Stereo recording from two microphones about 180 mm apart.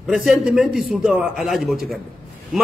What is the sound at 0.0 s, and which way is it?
A man's voice, centre (ahead or behind).